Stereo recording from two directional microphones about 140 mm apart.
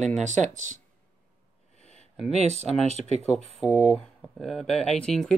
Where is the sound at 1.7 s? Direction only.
50° left (ahead or behind).